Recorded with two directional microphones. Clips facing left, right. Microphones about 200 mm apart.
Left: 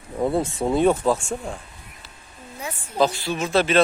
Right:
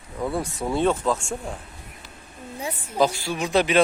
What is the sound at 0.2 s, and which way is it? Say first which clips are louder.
Speech: left 5 dB; 25° left (ahead or behind).